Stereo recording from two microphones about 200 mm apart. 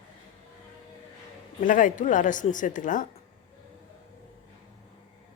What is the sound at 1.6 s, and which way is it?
A woman's voice, 40° left (ahead or behind).